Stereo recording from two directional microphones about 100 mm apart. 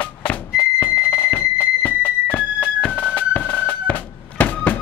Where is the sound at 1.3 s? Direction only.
15° left (ahead or behind).